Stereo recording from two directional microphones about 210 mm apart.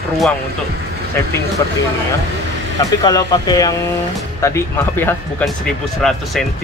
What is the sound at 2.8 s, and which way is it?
Speech, 20° left (ahead or behind).